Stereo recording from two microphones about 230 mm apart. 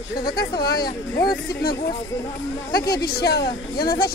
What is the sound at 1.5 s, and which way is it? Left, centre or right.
Speech, left.